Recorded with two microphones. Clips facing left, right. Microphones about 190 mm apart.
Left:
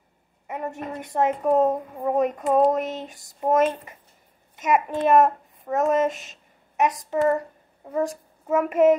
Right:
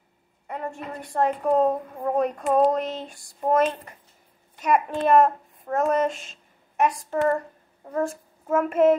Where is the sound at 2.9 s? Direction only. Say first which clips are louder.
Left 1 dB; 20° left (ahead or behind).